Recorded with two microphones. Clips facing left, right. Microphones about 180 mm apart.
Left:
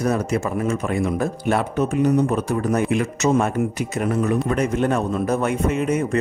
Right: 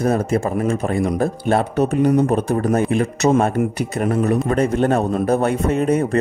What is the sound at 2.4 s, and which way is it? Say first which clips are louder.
A man's voice: right 3 dB; 50° right (ahead or behind).